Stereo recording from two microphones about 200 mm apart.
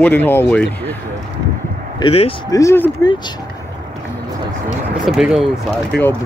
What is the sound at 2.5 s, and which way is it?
Speech, 10° left (ahead or behind).